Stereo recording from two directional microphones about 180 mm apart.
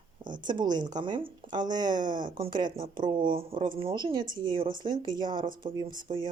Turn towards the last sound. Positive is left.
turn(degrees=-25)  # may be behind; listen again after turning